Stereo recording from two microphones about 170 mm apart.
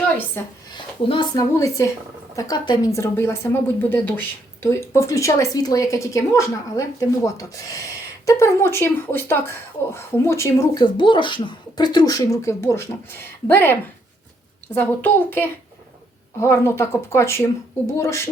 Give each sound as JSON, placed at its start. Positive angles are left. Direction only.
{"t": 0.4, "sound": "speech", "side_deg": 15}
{"t": 0.7, "sound": "a woman's voice", "side_deg": 30}
{"t": 14.8, "sound": "speech", "side_deg": 10}